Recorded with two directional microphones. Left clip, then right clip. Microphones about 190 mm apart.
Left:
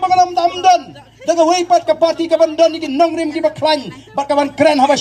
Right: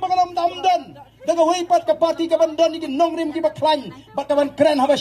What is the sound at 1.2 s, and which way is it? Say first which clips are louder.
A man's voice: left 5 dB; 20° right (ahead or behind).